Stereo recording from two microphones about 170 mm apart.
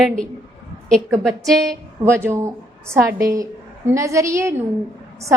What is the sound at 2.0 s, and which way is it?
A woman's voice, 15° right (ahead or behind).